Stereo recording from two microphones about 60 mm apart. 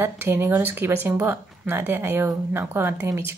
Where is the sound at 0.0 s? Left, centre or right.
Right.